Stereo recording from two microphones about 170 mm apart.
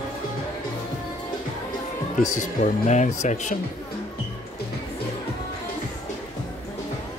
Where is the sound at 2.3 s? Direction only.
45° left (ahead or behind).